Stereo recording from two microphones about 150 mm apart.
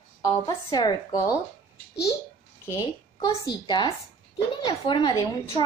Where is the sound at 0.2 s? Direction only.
25° left (ahead or behind).